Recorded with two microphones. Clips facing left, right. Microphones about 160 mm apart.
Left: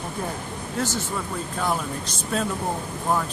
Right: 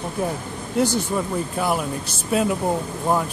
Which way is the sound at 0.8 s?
15° right (ahead or behind).